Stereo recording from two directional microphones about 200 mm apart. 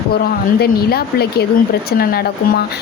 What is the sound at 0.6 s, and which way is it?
Speech, 50° left (ahead or behind).